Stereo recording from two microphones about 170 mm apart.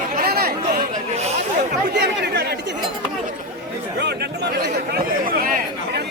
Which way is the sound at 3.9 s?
80° right.